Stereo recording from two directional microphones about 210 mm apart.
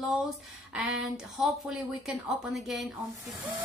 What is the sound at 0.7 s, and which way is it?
A woman's voice, 5° right (ahead or behind).